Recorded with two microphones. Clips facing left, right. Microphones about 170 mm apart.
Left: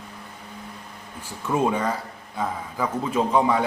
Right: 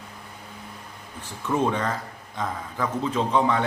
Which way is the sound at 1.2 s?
10° left (ahead or behind).